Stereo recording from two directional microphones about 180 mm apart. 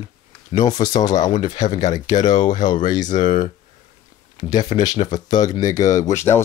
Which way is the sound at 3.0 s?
45° left (ahead or behind).